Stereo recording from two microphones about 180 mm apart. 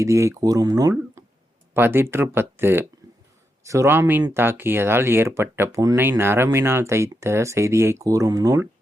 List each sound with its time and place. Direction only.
0.0 s speech: 15° right (ahead or behind)